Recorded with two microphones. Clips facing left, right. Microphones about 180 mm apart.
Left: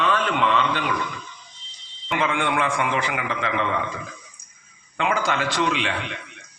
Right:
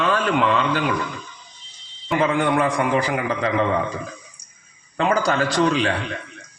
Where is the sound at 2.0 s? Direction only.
35° right (ahead or behind).